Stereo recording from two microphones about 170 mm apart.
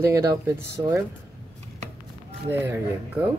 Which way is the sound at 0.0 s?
15° right (ahead or behind).